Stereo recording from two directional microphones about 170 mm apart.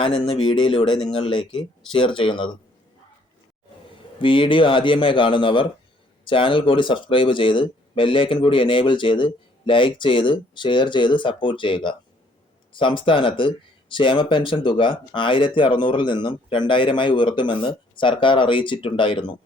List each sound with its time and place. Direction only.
0.0 s speech: 30° left (ahead or behind)
4.2 s speech: 30° left (ahead or behind)